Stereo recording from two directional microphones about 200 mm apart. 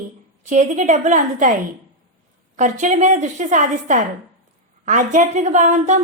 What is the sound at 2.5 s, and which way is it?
A woman's voice, 35° right (ahead or behind).